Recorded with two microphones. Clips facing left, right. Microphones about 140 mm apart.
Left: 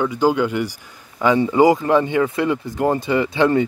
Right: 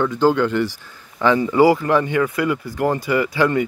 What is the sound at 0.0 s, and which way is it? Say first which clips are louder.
Speech: right 1 dB; 10° left (ahead or behind).